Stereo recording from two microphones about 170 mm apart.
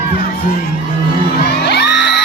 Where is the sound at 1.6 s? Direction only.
85° left.